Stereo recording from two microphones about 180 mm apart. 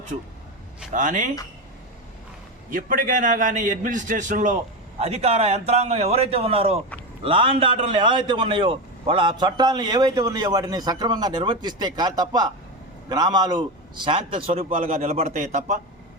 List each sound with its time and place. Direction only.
0.9 s a man's voice: 45° right (ahead or behind)
2.7 s a man's voice: 50° right (ahead or behind)